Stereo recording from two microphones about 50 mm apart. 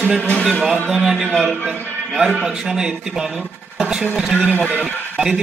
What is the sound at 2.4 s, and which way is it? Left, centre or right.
Speech, centre.